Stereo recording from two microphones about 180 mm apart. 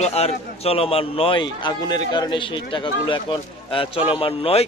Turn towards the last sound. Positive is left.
turn(degrees=30)  # may be behind; listen again after turning